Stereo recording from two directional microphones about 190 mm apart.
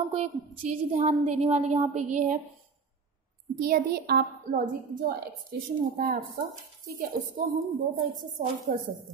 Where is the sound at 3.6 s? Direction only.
55° right (ahead or behind).